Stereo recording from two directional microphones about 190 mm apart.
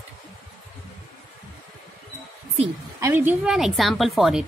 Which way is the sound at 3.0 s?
15° right (ahead or behind).